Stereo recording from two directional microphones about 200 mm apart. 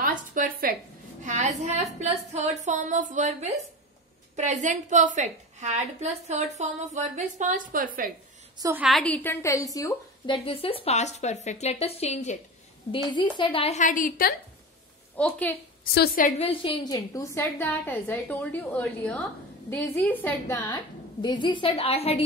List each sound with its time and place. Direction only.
0.0 s a sound: 45° right (ahead or behind)
2.6 s a woman's voice: 35° right (ahead or behind)
8.5 s a woman's voice: 15° right (ahead or behind)
8.8 s a woman's voice: 5° left (ahead or behind); by 12.4 s 35° left (ahead or behind)
12.9 s speech: 25° left (ahead or behind); by 14.3 s 45° left (ahead or behind)
15.1 s a woman's voice: 5° left (ahead or behind)
15.8 s a woman's voice: 50° left (ahead or behind)
16.3 s a woman's voice: 30° left (ahead or behind); by 20.6 s 10° left (ahead or behind)
20.7 s a woman's voice: 20° left (ahead or behind)